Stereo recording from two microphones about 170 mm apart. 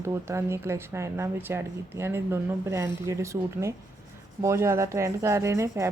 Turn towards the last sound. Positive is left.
turn(degrees=-15)  # may be behind; listen again after turning